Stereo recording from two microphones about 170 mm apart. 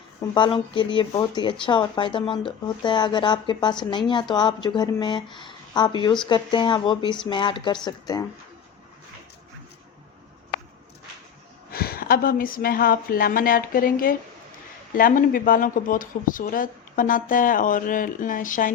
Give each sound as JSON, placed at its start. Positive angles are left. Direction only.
{"t": 0.3, "sound": "speech", "side_deg": 30}
{"t": 11.7, "sound": "a woman's voice", "side_deg": 65}